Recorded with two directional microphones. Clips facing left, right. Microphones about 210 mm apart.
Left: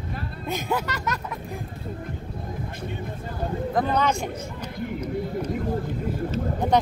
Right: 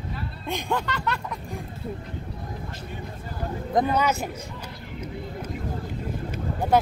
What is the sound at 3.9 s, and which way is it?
Speech, 5° right (ahead or behind).